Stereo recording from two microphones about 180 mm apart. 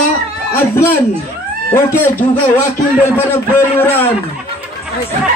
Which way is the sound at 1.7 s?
10° left (ahead or behind).